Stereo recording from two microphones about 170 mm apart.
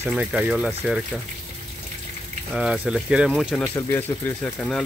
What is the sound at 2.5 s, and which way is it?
Speech, 5° right (ahead or behind).